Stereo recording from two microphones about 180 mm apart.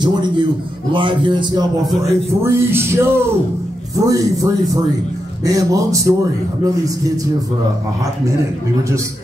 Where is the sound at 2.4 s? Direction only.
15° right (ahead or behind).